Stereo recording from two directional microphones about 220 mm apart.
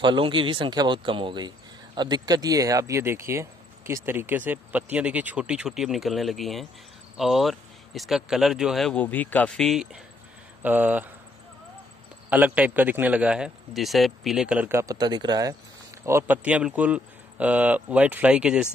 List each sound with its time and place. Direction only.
0.0 s speech: 20° right (ahead or behind)
12.3 s speech: 5° right (ahead or behind)